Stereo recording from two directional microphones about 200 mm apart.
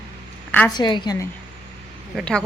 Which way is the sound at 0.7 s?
20° left (ahead or behind).